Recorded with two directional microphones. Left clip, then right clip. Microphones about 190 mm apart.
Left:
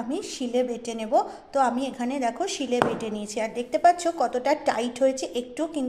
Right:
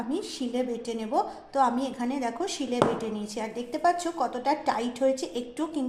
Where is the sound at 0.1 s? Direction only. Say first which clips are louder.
Left 5 dB; 25° left (ahead or behind).